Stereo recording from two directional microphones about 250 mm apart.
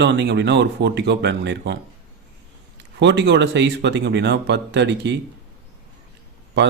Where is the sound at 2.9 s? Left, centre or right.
Right.